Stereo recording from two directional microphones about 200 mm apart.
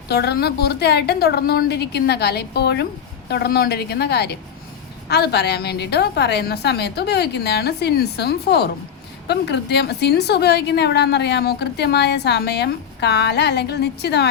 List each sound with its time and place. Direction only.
0.1 s a woman's voice: 55° left (ahead or behind)